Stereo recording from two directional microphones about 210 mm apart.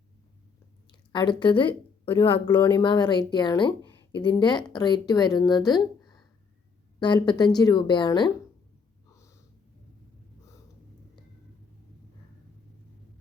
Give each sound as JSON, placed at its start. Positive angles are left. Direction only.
{"t": 0.9, "sound": "a woman's voice", "side_deg": 20}
{"t": 2.3, "sound": "speech", "side_deg": 10}
{"t": 2.8, "sound": "speech", "side_deg": 20}
{"t": 7.0, "sound": "speech", "side_deg": 20}